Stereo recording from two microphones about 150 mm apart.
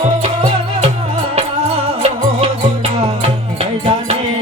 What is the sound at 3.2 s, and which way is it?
Music, 40° right (ahead or behind).